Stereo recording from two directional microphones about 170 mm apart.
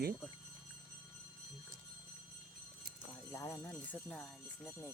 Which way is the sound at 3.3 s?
15° left (ahead or behind).